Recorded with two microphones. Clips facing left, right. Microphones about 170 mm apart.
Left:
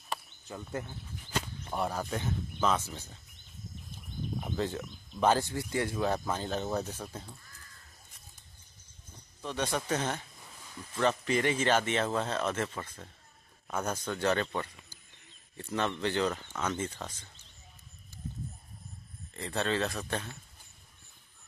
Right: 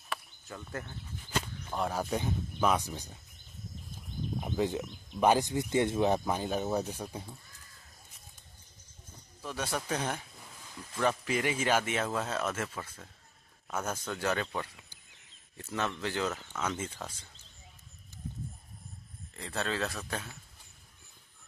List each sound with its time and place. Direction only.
0.5 s speech: 15° left (ahead or behind)
1.7 s speech: centre (ahead or behind)
2.0 s speech: 15° right (ahead or behind)
4.4 s speech: 15° right (ahead or behind)
9.4 s a man's voice: 5° right (ahead or behind)
19.3 s speech: centre (ahead or behind)